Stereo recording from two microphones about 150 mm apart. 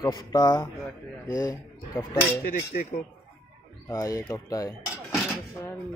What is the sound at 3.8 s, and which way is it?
Speech, 25° left (ahead or behind).